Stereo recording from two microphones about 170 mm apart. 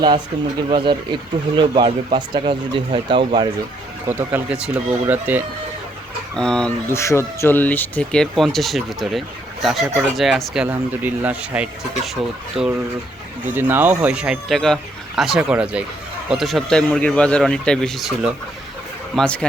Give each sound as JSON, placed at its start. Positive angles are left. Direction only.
{"t": 0.7, "sound": "speech", "side_deg": -30}
{"t": 4.0, "sound": "speech", "side_deg": -10}
{"t": 6.3, "sound": "speech", "side_deg": 5}
{"t": 6.9, "sound": "speech", "side_deg": 15}